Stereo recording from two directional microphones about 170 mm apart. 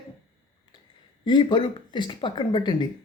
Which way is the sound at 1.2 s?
25° left (ahead or behind).